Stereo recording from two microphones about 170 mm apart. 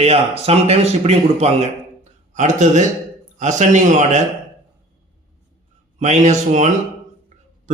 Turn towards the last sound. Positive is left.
turn(degrees=-45)  # may be behind; listen again after turning